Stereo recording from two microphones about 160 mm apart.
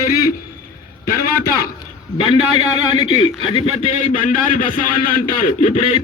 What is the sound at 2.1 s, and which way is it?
A man's voice, 35° left (ahead or behind).